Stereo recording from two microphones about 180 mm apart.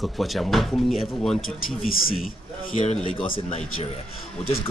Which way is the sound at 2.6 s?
40° left (ahead or behind).